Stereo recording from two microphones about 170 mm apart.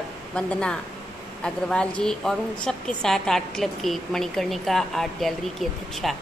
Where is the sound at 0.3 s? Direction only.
5° left (ahead or behind).